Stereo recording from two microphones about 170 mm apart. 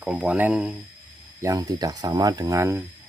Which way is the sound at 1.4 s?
20° right (ahead or behind).